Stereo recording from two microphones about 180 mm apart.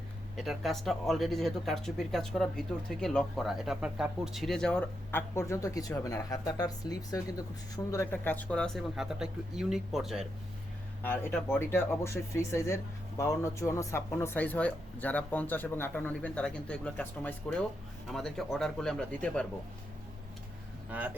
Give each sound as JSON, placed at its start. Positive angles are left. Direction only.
{"t": 0.3, "sound": "speech", "side_deg": 0}
{"t": 11.0, "sound": "speech", "side_deg": 10}